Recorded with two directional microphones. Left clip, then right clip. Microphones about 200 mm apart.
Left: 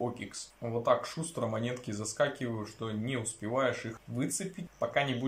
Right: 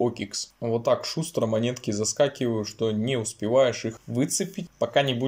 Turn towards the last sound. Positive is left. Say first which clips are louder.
# right 8 dB
turn(degrees=-35)  # may be behind; listen again after turning